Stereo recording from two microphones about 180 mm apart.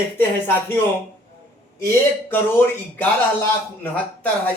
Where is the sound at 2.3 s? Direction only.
10° left (ahead or behind).